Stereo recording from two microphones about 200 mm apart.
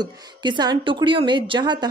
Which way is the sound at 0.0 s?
20° right (ahead or behind).